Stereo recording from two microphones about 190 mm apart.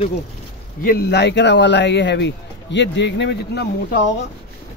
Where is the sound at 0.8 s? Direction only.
55° left (ahead or behind).